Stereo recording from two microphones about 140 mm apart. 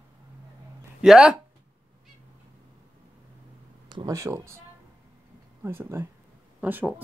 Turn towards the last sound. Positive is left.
turn(degrees=-15)  # may be behind; listen again after turning